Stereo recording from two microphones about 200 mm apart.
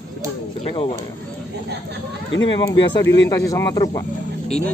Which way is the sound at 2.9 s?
15° left (ahead or behind).